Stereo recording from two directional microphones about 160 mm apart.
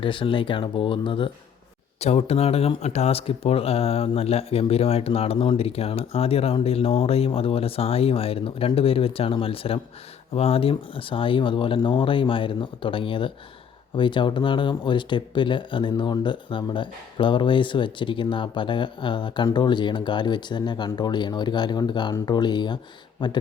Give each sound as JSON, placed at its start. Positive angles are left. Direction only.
{"t": 0.0, "sound": "speech", "side_deg": 30}